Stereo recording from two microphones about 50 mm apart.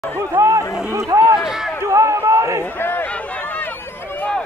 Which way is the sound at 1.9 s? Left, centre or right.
Right.